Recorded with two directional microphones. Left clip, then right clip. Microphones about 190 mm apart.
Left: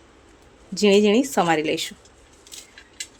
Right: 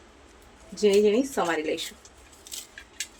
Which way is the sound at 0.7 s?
50° left (ahead or behind).